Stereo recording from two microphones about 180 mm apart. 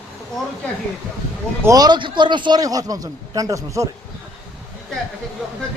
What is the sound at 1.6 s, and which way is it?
A man's voice, 20° right (ahead or behind).